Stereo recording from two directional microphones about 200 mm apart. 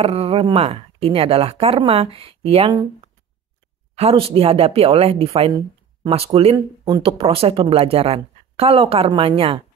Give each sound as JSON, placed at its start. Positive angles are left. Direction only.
{"t": 0.0, "sound": "speech", "side_deg": -30}
{"t": 3.9, "sound": "speech", "side_deg": -30}